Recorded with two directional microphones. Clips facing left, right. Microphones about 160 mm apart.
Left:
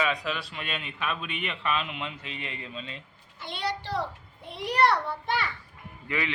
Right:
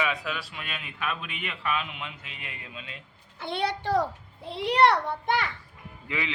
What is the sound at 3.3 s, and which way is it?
Speech, 55° right (ahead or behind).